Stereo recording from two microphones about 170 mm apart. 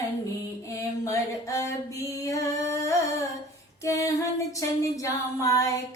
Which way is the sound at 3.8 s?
20° left (ahead or behind).